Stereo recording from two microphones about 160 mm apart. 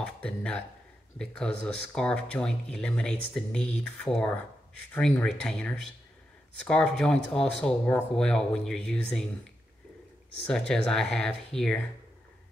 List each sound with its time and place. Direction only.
0.0 s speech: 5° left (ahead or behind)
10.7 s speech: 5° left (ahead or behind)